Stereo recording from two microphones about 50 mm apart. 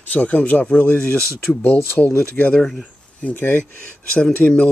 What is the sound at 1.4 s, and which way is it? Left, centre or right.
Speech, left.